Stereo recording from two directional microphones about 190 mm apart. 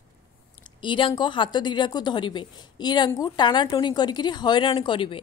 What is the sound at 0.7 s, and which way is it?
A woman's voice, 25° left (ahead or behind).